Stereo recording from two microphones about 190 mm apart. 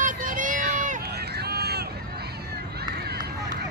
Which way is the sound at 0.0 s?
45° right (ahead or behind).